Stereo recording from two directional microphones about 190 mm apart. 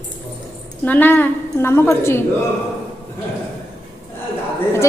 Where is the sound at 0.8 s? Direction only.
10° left (ahead or behind).